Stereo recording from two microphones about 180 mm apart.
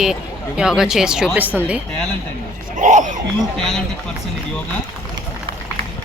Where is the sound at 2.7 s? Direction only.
45° right (ahead or behind).